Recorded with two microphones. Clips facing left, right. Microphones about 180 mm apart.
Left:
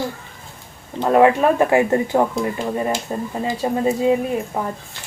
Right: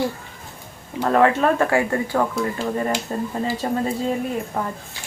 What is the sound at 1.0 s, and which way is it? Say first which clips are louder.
Speech: left 3 dB; 15° left (ahead or behind).